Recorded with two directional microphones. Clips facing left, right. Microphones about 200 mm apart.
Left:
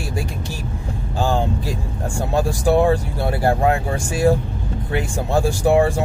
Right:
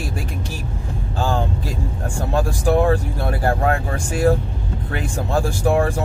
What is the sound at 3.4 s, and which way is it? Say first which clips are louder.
Speech: left 2 dB; 15° left (ahead or behind).